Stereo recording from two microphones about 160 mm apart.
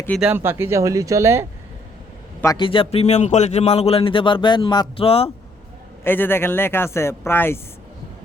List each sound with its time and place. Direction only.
0.2 s speech: 10° right (ahead or behind)
2.4 s a man's voice: 20° left (ahead or behind)
2.6 s speech: 35° left (ahead or behind)
6.1 s speech: 15° left (ahead or behind)